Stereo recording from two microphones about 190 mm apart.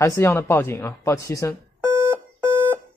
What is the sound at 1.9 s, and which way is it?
Alarm clock, 15° right (ahead or behind).